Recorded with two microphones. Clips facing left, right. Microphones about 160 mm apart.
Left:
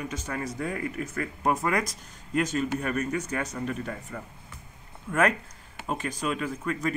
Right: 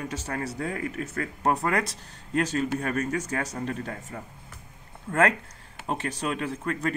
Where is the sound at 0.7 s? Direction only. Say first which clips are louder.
Even; 20° left (ahead or behind).